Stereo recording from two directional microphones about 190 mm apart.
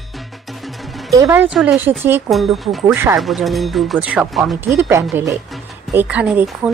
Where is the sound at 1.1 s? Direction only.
15° right (ahead or behind).